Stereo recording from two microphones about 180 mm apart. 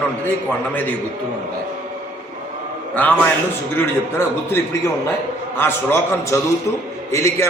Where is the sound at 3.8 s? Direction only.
10° left (ahead or behind).